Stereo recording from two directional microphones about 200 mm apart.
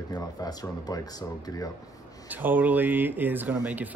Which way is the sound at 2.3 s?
10° right (ahead or behind).